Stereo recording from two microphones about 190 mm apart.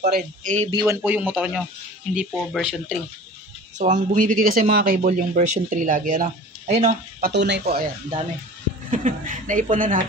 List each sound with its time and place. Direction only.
0.0 s a man's voice: 45° right (ahead or behind)
0.7 s speech: 20° right (ahead or behind)
1.0 s speech: 10° right (ahead or behind)
3.7 s speech: 40° right (ahead or behind); by 7.8 s 60° right (ahead or behind)
8.9 s speech: 45° right (ahead or behind)